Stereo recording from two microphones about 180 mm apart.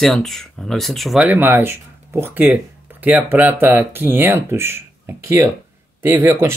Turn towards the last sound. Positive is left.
turn(degrees=-10)  # may be behind; listen again after turning